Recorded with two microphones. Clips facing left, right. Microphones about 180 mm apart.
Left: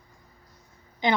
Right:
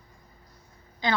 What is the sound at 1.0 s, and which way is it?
Speech, 20° left (ahead or behind).